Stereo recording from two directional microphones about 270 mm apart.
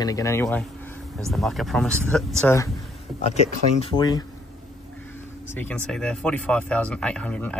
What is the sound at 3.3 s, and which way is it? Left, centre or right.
Speech, left.